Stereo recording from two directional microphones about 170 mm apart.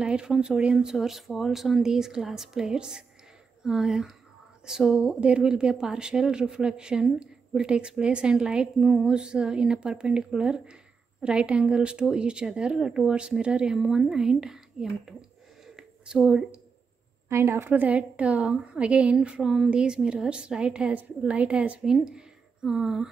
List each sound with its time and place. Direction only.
0.0 s a woman's voice: 5° right (ahead or behind)
15.6 s a sound: 5° right (ahead or behind)
17.3 s a woman's voice: 15° right (ahead or behind)